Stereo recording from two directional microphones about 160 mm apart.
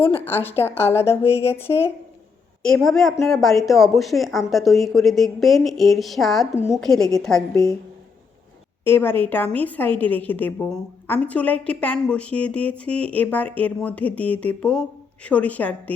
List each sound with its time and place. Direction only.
0.1 s a woman's voice: 15° left (ahead or behind)
2.6 s a woman's voice: 5° left (ahead or behind)
7.5 s a woman's voice: 20° left (ahead or behind)
8.8 s a woman's voice: 15° left (ahead or behind)